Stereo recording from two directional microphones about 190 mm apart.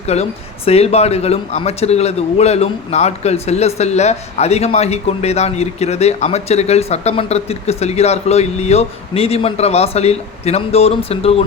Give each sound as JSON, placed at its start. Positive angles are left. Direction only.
{"t": 0.0, "sound": "speech", "side_deg": 35}